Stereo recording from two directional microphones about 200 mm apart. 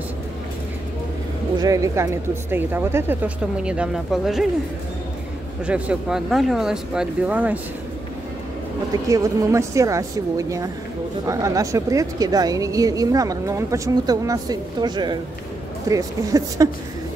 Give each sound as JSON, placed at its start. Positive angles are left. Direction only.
{"t": 1.6, "sound": "speech", "side_deg": -15}
{"t": 5.7, "sound": "speech", "side_deg": -5}
{"t": 9.1, "sound": "speech", "side_deg": -15}